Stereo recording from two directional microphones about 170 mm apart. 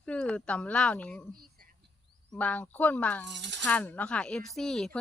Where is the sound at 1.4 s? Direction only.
60° right (ahead or behind).